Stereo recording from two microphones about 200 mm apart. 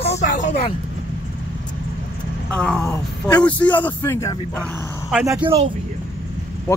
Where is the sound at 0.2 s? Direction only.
35° left (ahead or behind).